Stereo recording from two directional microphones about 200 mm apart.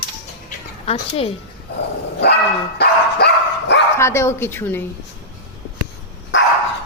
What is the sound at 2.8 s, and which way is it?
Dog, 60° left (ahead or behind).